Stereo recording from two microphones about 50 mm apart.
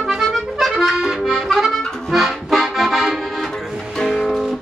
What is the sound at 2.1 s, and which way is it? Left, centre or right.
Accordion, centre.